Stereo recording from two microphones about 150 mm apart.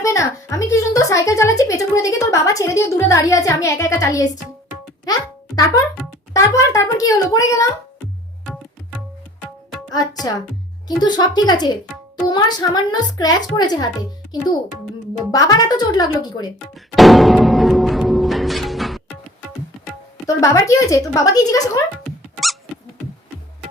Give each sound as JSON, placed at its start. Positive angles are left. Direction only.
{"t": 0.0, "sound": "a woman's voice", "side_deg": 20}
{"t": 10.8, "sound": "a woman's voice", "side_deg": 25}
{"t": 15.3, "sound": "a woman's voice", "side_deg": 25}
{"t": 16.9, "sound": "music", "side_deg": 0}
{"t": 20.2, "sound": "a woman's voice", "side_deg": 20}